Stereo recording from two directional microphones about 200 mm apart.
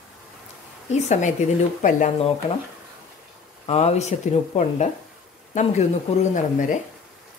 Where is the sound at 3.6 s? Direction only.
35° left (ahead or behind).